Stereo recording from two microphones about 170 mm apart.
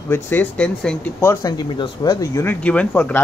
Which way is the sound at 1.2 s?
25° left (ahead or behind).